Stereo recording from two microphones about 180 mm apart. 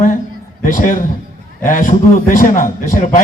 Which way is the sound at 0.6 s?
45° left (ahead or behind).